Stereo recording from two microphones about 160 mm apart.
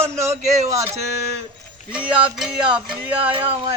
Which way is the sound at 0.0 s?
15° right (ahead or behind).